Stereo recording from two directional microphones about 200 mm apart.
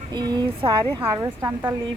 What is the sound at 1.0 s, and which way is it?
Speech, 15° right (ahead or behind).